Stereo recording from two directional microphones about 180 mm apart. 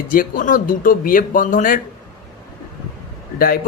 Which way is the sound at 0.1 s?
50° left (ahead or behind).